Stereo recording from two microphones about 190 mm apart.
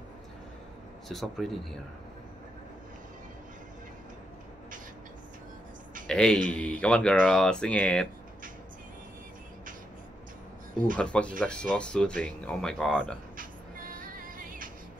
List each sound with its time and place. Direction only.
1.0 s speech: centre (ahead or behind)
6.0 s speech: 5° left (ahead or behind)
11.0 s speech: 5° left (ahead or behind)
14.1 s music: 45° right (ahead or behind)